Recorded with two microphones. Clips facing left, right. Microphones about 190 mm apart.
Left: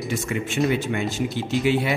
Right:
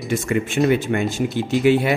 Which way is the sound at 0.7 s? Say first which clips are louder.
Right 5 dB; 55° right (ahead or behind).